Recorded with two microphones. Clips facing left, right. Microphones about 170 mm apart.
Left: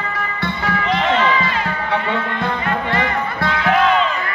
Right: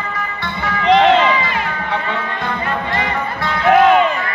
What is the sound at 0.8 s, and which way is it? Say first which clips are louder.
Music: right 10 dB; 70° right (ahead or behind).